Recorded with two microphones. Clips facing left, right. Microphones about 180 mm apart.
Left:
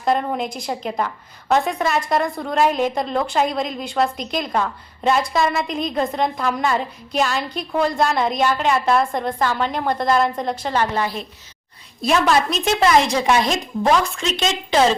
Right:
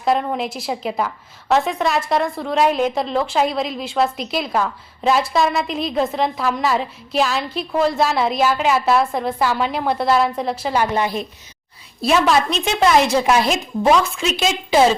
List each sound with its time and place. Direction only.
0.0 s a woman's voice: centre (ahead or behind); by 11.3 s 15° right (ahead or behind)
12.0 s a woman's voice: centre (ahead or behind)